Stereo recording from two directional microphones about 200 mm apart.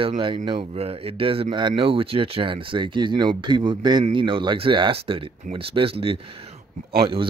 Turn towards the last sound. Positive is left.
turn(degrees=-30)  # may be behind; listen again after turning